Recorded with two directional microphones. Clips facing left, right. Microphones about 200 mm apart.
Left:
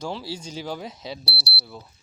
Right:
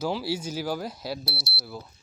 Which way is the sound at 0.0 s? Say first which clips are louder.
Right 4 dB; 5° right (ahead or behind).